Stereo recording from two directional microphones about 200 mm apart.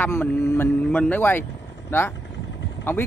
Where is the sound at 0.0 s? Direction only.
10° left (ahead or behind).